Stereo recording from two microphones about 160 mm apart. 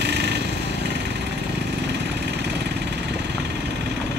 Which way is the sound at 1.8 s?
90° right.